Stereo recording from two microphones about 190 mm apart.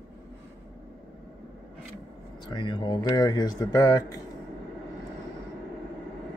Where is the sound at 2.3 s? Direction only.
25° left (ahead or behind).